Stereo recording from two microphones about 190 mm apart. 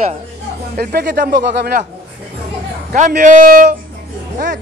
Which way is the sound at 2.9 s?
50° right (ahead or behind).